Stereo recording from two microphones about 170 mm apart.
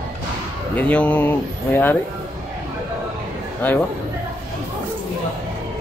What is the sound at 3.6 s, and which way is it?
Speech, 10° left (ahead or behind).